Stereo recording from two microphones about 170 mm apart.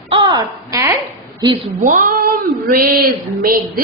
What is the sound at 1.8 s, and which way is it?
A woman's voice, 50° right (ahead or behind).